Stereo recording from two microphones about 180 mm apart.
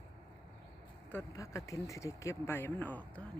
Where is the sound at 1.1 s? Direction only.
15° left (ahead or behind).